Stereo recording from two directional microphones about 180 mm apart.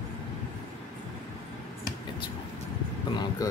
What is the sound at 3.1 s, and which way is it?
Speech, 25° left (ahead or behind).